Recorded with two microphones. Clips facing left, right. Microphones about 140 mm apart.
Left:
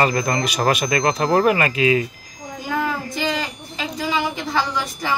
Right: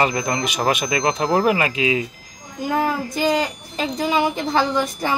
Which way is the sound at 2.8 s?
45° right (ahead or behind).